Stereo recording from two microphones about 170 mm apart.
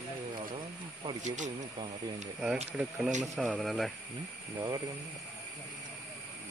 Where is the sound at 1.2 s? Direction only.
45° right (ahead or behind).